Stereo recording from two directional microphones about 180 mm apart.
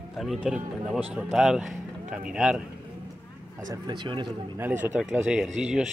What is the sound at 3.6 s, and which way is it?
Speech, 25° right (ahead or behind).